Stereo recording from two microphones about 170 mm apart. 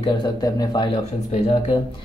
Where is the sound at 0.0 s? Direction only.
25° left (ahead or behind).